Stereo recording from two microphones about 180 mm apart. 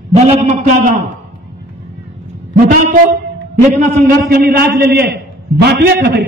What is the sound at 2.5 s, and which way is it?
Speech, 45° right (ahead or behind).